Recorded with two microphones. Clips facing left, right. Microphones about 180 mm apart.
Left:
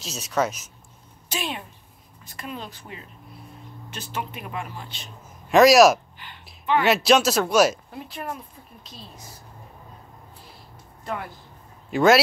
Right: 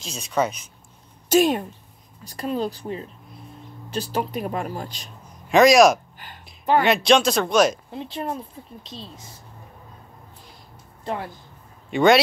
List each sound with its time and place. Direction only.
0.0 s speech: 5° left (ahead or behind)
1.3 s speech: 45° right (ahead or behind)
5.5 s speech: centre (ahead or behind)
6.1 s a sound: 45° right (ahead or behind)
6.8 s speech: 5° left (ahead or behind)
7.9 s speech: 25° right (ahead or behind)
11.9 s speech: centre (ahead or behind)